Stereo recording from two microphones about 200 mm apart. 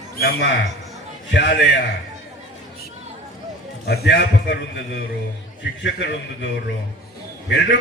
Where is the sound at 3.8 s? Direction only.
55° left (ahead or behind).